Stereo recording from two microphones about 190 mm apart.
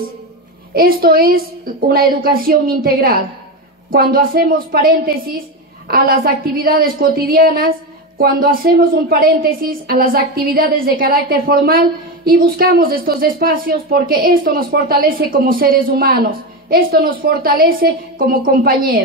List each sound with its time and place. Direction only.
0.7 s speech: 50° right (ahead or behind)